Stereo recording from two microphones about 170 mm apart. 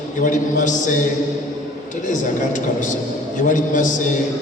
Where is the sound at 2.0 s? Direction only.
45° left (ahead or behind).